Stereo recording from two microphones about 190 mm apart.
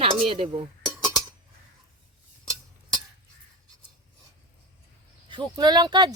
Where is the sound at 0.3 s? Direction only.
30° right (ahead or behind).